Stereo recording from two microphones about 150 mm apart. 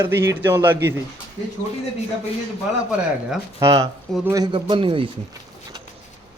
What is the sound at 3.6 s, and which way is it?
A man's voice, 20° right (ahead or behind).